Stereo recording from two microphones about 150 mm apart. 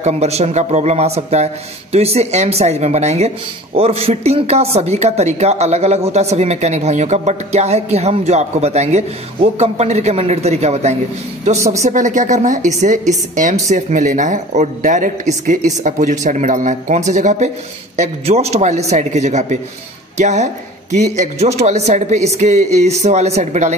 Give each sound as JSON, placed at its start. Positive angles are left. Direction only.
{"t": 0.0, "sound": "a man's voice", "side_deg": -45}
{"t": 11.5, "sound": "speech", "side_deg": -20}
{"t": 11.8, "sound": "a woman's voice", "side_deg": -55}